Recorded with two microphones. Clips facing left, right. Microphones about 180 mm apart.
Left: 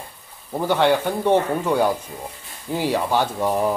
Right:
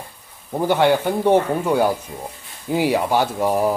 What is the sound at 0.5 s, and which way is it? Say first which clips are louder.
Speech: right 2 dB; 10° right (ahead or behind).